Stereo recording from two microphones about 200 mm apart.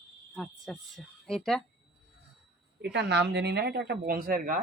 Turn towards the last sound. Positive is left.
turn(degrees=-45)  # may be behind; listen again after turning